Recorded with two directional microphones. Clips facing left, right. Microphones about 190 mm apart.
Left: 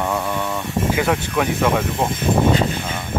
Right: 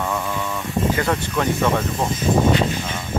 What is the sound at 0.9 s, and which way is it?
Speech, 10° left (ahead or behind).